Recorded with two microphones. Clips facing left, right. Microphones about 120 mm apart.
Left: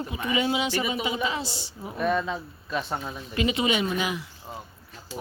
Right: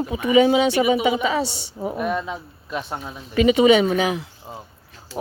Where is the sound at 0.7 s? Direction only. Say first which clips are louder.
Right 9 dB; 80° right.